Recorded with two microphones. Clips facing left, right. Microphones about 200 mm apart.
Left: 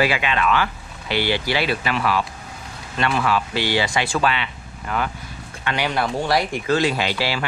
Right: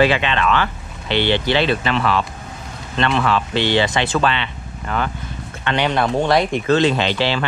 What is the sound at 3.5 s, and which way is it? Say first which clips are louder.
Speech: right 4 dB; 20° right (ahead or behind).